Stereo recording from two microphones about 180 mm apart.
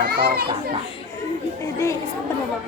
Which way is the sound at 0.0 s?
60° right (ahead or behind).